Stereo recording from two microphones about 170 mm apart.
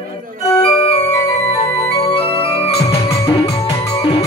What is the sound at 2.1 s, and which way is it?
Music, 35° left (ahead or behind).